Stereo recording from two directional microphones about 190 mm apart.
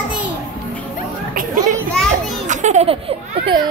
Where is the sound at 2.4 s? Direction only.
40° right (ahead or behind).